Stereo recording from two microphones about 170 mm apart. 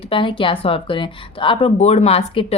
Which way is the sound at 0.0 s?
30° left (ahead or behind).